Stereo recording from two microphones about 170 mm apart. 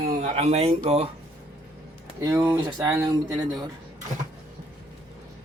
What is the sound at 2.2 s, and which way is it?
Speech, 20° right (ahead or behind).